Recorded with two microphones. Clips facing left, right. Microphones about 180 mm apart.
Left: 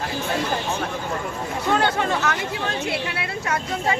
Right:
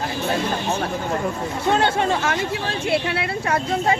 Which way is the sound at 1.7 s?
25° right (ahead or behind).